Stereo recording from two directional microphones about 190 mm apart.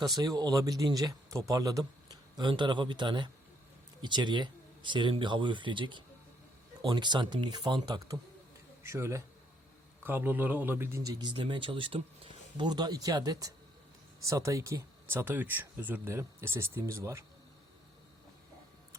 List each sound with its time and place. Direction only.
0.2 s a man's voice: 20° right (ahead or behind)